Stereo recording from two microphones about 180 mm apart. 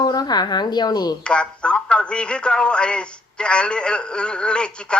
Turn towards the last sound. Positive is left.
turn(degrees=5)  # may be behind; listen again after turning